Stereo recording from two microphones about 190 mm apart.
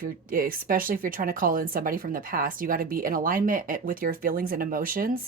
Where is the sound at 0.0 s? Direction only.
50° right (ahead or behind).